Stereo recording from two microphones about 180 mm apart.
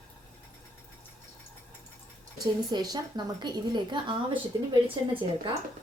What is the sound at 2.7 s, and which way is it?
A woman's voice, 20° right (ahead or behind).